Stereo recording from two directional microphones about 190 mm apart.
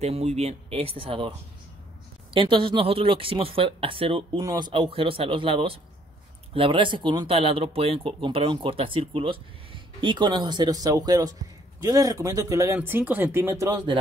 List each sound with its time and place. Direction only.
0.0 s speech: 35° right (ahead or behind)
2.3 s speech: 25° right (ahead or behind)